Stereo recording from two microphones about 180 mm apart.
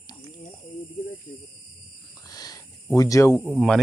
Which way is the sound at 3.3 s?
Centre (ahead or behind).